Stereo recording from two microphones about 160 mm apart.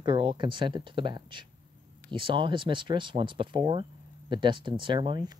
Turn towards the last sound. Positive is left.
turn(degrees=-30)  # may be behind; listen again after turning